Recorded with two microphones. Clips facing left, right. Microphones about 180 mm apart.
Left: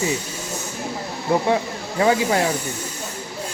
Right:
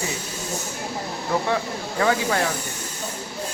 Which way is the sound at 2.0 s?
20° left (ahead or behind).